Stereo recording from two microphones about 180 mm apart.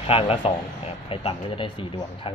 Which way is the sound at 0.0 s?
30° left (ahead or behind).